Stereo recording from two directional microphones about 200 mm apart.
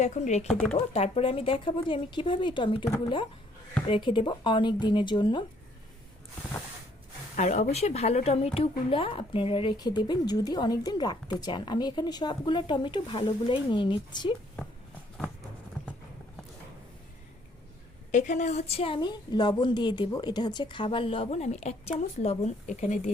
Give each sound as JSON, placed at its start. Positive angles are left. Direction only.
{"t": 0.0, "sound": "speech", "side_deg": 35}
{"t": 7.3, "sound": "speech", "side_deg": 35}
{"t": 18.1, "sound": "speech", "side_deg": 35}